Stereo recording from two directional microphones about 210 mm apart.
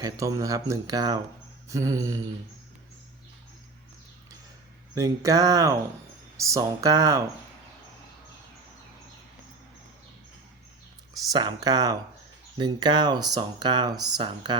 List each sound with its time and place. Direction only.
0.0 s speech: 15° right (ahead or behind)
4.9 s speech: 15° right (ahead or behind)
11.3 s speech: 20° right (ahead or behind)